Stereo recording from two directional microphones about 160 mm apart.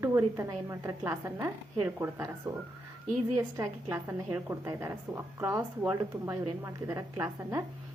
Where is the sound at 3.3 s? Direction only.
20° right (ahead or behind).